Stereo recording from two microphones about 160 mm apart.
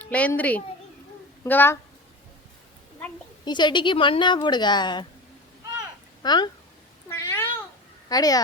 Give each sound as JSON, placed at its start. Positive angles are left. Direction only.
{"t": 0.0, "sound": "a child's voice", "side_deg": 10}
{"t": 3.4, "sound": "speech", "side_deg": 30}
{"t": 6.2, "sound": "speech", "side_deg": 25}
{"t": 7.1, "sound": "cat", "side_deg": 15}
{"t": 8.1, "sound": "speech", "side_deg": 25}